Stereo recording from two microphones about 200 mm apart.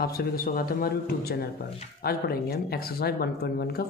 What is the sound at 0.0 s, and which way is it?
Speech, 50° left (ahead or behind).